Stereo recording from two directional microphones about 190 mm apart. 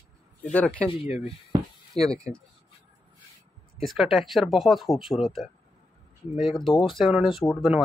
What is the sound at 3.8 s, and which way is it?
Speech, centre (ahead or behind).